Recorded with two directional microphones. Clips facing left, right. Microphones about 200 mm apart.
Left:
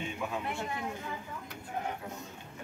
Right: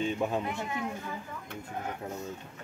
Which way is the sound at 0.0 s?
35° right (ahead or behind).